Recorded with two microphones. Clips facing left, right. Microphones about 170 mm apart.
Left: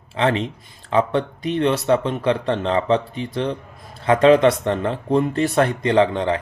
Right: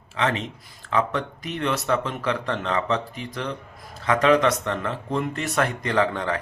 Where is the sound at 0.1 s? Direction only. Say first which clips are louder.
Left 5 dB; 30° left (ahead or behind).